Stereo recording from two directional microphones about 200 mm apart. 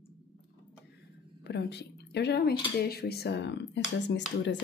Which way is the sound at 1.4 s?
55° left (ahead or behind).